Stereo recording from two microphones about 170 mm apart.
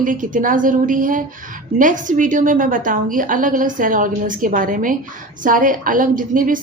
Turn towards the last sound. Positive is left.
turn(degrees=-55)  # may be behind; listen again after turning